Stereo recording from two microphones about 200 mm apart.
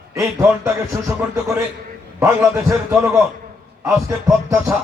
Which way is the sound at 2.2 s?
15° right (ahead or behind).